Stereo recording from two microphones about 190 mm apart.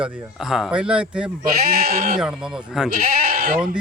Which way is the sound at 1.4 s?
50° right (ahead or behind).